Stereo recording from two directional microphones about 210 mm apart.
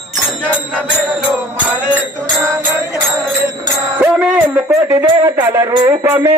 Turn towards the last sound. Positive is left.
turn(degrees=-10)  # may be behind; listen again after turning